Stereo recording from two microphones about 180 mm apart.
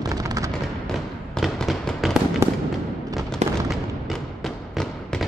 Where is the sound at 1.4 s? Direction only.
Centre (ahead or behind).